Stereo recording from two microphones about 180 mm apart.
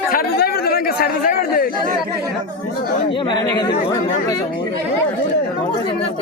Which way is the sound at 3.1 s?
25° left (ahead or behind).